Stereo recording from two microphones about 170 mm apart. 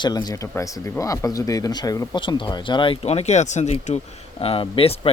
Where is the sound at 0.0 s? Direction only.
25° left (ahead or behind).